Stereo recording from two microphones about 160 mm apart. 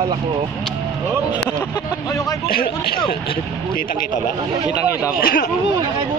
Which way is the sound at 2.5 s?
70° left (ahead or behind).